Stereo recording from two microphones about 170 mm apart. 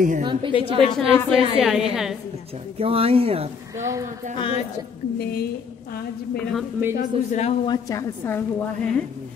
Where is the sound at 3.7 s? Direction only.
15° right (ahead or behind).